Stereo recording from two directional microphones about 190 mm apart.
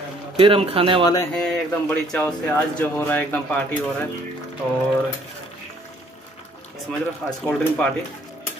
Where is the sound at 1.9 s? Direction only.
5° left (ahead or behind).